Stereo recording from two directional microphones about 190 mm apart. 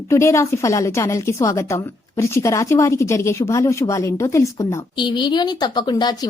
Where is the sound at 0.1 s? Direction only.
15° left (ahead or behind).